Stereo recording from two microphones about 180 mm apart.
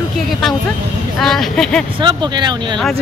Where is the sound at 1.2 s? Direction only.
Centre (ahead or behind).